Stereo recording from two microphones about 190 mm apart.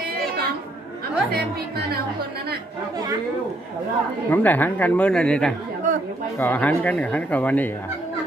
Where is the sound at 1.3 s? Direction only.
60° right (ahead or behind).